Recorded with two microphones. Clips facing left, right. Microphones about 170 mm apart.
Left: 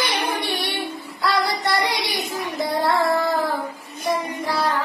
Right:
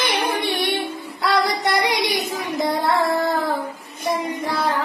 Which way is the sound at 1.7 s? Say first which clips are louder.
Right 3 dB; 20° right (ahead or behind).